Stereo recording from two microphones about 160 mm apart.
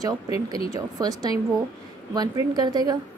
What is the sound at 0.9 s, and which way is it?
A woman's voice, 25° right (ahead or behind).